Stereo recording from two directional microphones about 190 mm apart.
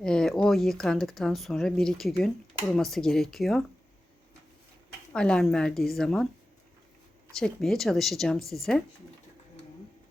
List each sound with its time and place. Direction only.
0.0 s speech: 5° left (ahead or behind)
5.1 s speech: 5° left (ahead or behind)
7.3 s speech: centre (ahead or behind)